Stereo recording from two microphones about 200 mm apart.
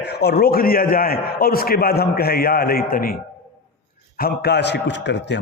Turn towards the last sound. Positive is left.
turn(degrees=60)  # may be behind; listen again after turning